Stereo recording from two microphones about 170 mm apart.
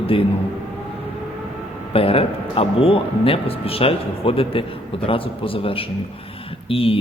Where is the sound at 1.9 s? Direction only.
35° left (ahead or behind).